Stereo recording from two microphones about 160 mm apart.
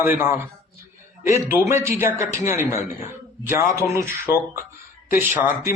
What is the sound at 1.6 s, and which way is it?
A man's voice, 15° right (ahead or behind).